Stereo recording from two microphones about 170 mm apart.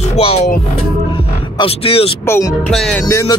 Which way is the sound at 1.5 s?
35° left (ahead or behind).